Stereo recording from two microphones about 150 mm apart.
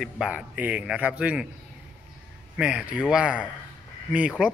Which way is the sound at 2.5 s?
5° right (ahead or behind).